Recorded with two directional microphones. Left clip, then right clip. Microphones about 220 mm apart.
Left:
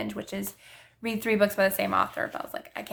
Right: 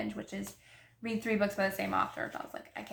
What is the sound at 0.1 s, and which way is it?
A woman's voice, 45° left (ahead or behind).